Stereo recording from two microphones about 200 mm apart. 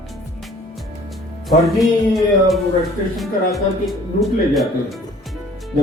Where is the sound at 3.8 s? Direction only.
Centre (ahead or behind).